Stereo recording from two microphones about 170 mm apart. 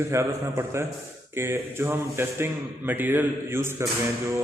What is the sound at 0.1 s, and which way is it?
A man's voice, 15° right (ahead or behind).